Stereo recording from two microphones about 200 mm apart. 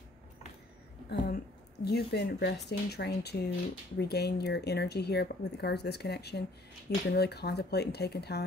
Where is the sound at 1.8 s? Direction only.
55° left (ahead or behind).